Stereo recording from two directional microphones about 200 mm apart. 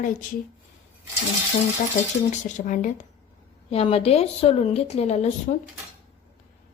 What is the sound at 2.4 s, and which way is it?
A woman's voice, 40° left (ahead or behind).